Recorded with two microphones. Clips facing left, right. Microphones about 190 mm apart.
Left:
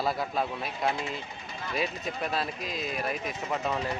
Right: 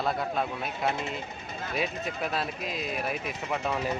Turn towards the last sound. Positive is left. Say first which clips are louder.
# even
turn(degrees=-5)  # may be behind; listen again after turning